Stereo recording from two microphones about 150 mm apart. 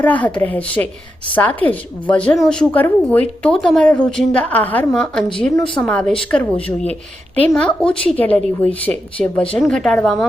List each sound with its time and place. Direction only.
0.0 s a woman's voice: 10° left (ahead or behind)